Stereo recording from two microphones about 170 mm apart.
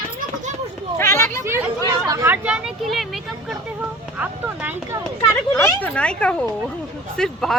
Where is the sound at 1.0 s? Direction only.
15° left (ahead or behind).